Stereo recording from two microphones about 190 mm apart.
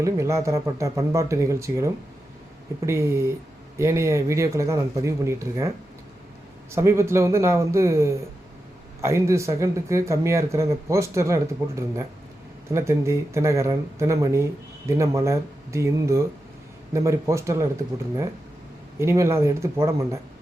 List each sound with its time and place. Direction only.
0.0 s speech: 15° right (ahead or behind)
18.9 s speech: 15° right (ahead or behind)